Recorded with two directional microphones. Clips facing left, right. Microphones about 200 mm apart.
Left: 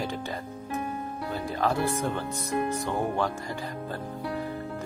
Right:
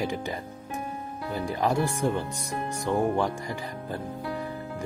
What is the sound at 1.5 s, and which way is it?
Speech, 15° right (ahead or behind).